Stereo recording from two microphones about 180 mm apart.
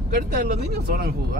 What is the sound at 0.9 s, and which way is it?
Speech, 60° right (ahead or behind).